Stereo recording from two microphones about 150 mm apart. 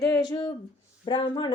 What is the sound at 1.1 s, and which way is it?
Speech, 35° left (ahead or behind).